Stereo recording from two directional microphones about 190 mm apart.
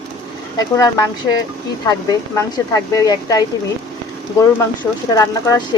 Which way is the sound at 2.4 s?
20° left (ahead or behind).